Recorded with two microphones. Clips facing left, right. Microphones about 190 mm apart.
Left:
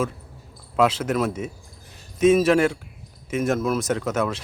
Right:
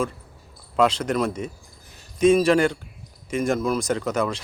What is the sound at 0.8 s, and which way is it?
Speech, 5° left (ahead or behind).